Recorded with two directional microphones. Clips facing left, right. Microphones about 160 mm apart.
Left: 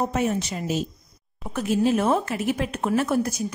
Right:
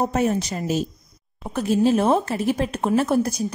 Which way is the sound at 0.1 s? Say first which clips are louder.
Right 3 dB; 40° right (ahead or behind).